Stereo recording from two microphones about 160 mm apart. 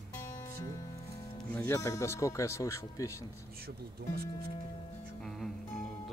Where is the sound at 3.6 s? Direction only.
70° right (ahead or behind).